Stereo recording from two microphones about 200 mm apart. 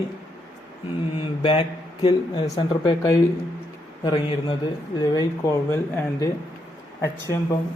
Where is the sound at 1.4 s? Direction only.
25° left (ahead or behind).